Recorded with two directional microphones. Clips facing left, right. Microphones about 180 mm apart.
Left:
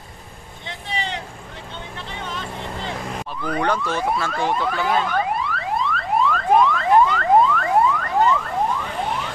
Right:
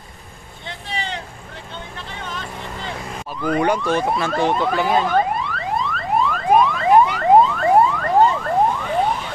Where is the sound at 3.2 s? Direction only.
10° right (ahead or behind).